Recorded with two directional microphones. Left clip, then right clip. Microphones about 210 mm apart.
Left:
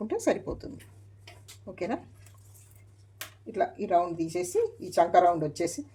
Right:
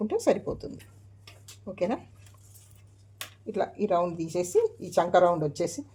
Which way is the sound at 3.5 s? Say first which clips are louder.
Left 1 dB; 30° right (ahead or behind).